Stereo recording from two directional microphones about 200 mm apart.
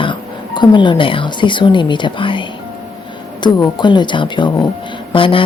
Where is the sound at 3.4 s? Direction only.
20° left (ahead or behind).